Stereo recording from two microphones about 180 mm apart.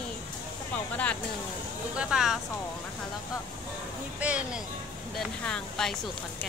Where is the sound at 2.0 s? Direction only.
5° right (ahead or behind).